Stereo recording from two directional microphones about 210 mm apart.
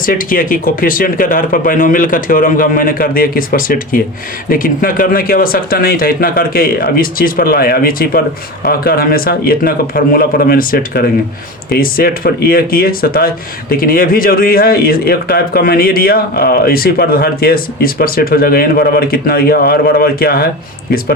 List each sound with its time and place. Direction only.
0.0 s speech: 40° left (ahead or behind)